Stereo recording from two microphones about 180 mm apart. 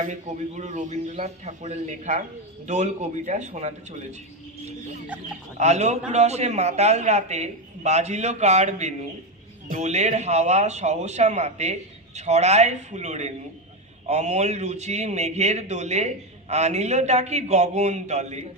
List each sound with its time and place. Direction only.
0.0 s a man's voice: 40° right (ahead or behind)
5.5 s a man's voice: 40° right (ahead or behind)